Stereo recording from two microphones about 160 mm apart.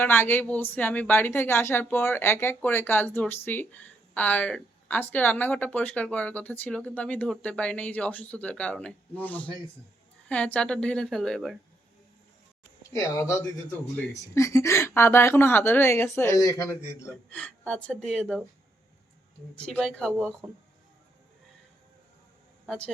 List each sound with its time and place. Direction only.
0.0 s a woman's voice: 15° left (ahead or behind)
12.9 s a woman's voice: 20° left (ahead or behind)
17.3 s a woman's voice: 5° left (ahead or behind)
19.5 s a woman's voice: 5° left (ahead or behind)
22.6 s a man's voice: centre (ahead or behind)